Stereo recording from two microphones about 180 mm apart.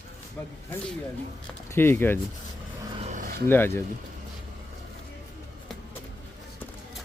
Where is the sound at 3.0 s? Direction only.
45° right (ahead or behind).